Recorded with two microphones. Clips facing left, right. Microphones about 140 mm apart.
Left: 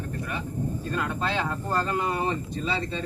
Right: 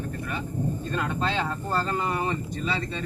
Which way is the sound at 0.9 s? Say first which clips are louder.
Left 1 dB; 5° left (ahead or behind).